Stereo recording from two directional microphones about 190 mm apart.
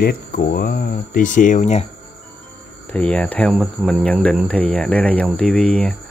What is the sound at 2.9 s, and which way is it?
Speech, 5° left (ahead or behind).